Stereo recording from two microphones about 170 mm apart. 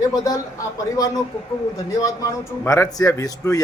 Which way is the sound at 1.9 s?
20° left (ahead or behind).